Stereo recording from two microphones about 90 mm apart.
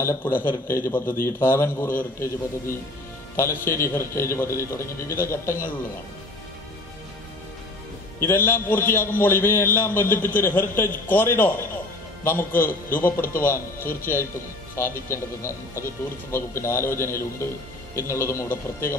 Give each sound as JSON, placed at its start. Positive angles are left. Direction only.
{"t": 0.0, "sound": "a man's voice", "side_deg": 25}
{"t": 3.3, "sound": "a man's voice", "side_deg": 35}
{"t": 8.3, "sound": "a man's voice", "side_deg": 25}